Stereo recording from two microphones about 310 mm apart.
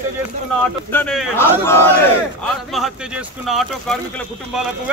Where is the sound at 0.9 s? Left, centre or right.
Centre.